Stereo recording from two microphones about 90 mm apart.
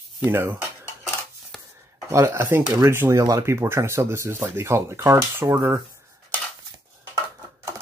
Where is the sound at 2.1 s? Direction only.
30° right (ahead or behind).